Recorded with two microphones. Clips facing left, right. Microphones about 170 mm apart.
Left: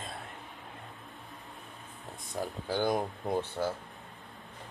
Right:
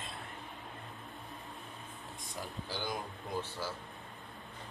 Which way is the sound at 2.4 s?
55° left (ahead or behind).